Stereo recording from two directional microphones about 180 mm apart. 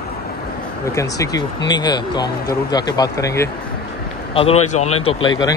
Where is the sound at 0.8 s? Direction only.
20° left (ahead or behind).